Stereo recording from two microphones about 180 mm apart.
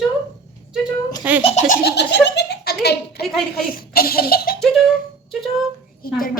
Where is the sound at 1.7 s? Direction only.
65° left (ahead or behind).